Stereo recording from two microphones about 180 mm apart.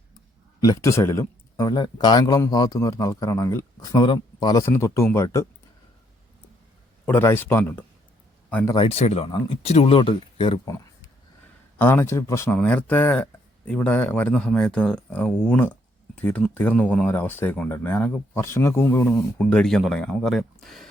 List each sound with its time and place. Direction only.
0.6 s speech: 20° left (ahead or behind)
7.0 s speech: 10° left (ahead or behind)
8.7 s speech: 30° left (ahead or behind)
11.8 s speech: 10° left (ahead or behind)